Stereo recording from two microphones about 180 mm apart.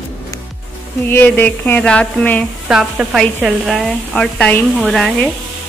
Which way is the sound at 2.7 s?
Centre (ahead or behind).